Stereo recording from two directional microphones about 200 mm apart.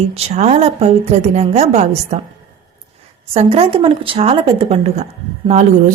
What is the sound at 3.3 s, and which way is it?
Speech, 30° right (ahead or behind).